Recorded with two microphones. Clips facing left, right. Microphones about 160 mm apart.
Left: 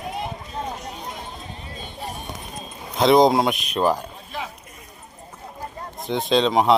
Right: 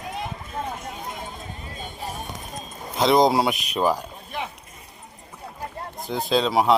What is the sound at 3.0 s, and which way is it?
Speech, centre (ahead or behind).